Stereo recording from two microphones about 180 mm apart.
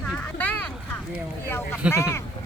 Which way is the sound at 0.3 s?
10° left (ahead or behind).